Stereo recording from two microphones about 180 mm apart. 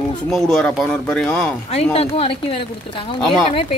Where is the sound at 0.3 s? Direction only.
Centre (ahead or behind).